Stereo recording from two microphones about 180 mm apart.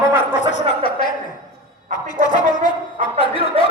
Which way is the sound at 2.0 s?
25° left (ahead or behind).